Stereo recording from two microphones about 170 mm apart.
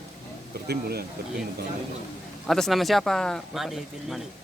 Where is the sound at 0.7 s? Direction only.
65° right (ahead or behind).